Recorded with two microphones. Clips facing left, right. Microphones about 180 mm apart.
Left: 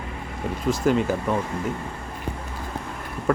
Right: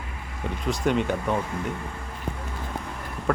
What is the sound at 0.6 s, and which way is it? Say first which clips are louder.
Speech: left 3 dB; centre (ahead or behind).